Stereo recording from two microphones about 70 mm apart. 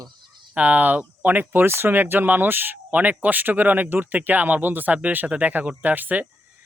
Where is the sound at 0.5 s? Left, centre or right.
Centre.